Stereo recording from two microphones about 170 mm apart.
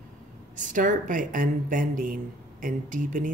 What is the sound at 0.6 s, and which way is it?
Speech, 50° right (ahead or behind).